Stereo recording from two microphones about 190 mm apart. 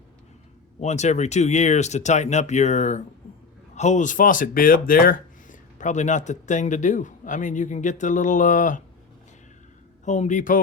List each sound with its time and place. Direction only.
0.8 s speech: 35° left (ahead or behind)
10.1 s speech: 40° left (ahead or behind)